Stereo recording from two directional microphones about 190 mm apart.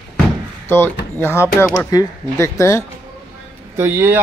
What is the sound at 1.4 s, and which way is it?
Speech, 10° left (ahead or behind).